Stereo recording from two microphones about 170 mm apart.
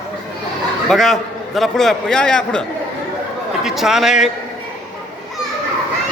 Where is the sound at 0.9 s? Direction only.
Centre (ahead or behind).